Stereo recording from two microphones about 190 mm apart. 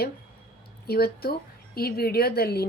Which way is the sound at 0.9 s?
55° left (ahead or behind).